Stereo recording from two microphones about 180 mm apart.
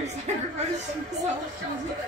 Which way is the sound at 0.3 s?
40° right (ahead or behind).